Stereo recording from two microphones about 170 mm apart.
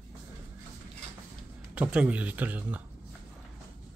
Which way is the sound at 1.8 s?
10° right (ahead or behind).